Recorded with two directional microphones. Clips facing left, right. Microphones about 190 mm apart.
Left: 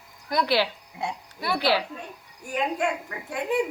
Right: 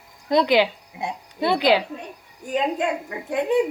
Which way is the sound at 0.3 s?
20° right (ahead or behind).